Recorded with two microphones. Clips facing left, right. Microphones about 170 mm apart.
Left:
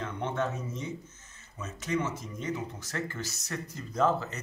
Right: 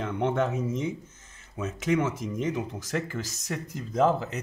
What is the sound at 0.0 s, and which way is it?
Speech, 90° right.